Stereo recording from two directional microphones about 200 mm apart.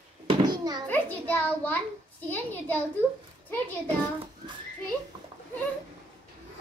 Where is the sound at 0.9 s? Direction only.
10° left (ahead or behind).